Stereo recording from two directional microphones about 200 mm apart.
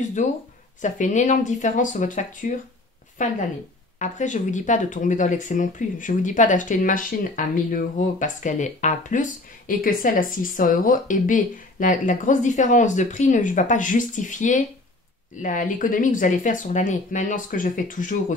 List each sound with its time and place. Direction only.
0.2 s speech: 35° left (ahead or behind)